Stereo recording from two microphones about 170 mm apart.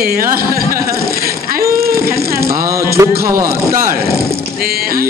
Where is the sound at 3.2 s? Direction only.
60° right (ahead or behind).